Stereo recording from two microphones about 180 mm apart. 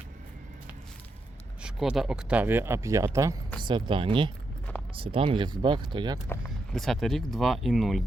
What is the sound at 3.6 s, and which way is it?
Speech, 25° right (ahead or behind).